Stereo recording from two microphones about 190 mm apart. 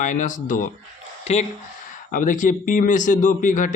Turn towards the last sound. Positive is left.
turn(degrees=45)  # may be behind; listen again after turning